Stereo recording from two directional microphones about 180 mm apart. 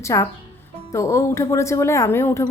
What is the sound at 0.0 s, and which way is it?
A woman's voice, 15° left (ahead or behind).